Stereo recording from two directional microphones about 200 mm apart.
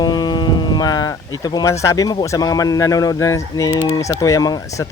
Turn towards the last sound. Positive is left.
turn(degrees=15)  # may be behind; listen again after turning